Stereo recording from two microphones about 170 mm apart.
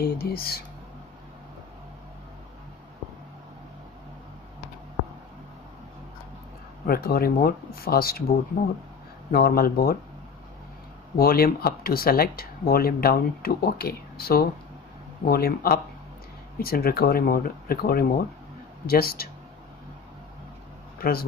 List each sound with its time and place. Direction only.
0.0 s speech: 60° left (ahead or behind)
6.9 s speech: 60° left (ahead or behind)
9.3 s speech: 60° left (ahead or behind)
11.1 s speech: 60° left (ahead or behind)
21.0 s speech: 60° left (ahead or behind)